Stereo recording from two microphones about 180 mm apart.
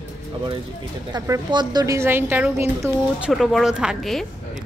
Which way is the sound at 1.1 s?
25° right (ahead or behind).